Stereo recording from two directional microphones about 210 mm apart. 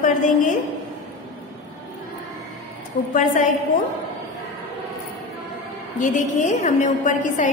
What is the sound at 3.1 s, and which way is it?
Speech, 40° left (ahead or behind).